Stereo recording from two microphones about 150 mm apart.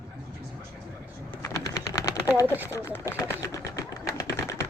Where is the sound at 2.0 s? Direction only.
20° left (ahead or behind).